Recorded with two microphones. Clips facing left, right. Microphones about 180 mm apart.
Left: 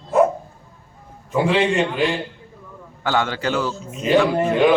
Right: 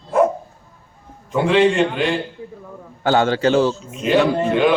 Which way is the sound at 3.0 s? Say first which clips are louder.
Right 6 dB; 30° right (ahead or behind).